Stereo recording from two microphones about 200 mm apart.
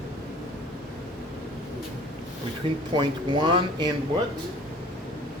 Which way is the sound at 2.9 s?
25° right (ahead or behind).